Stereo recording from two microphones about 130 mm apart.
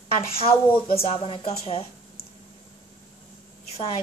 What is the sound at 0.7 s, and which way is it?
A woman's voice, 45° left (ahead or behind).